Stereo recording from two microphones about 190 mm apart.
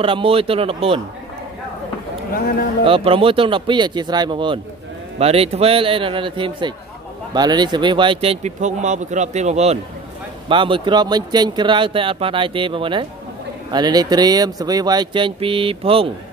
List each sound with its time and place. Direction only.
0.0 s speech: 30° right (ahead or behind)
2.8 s speech: 30° right (ahead or behind)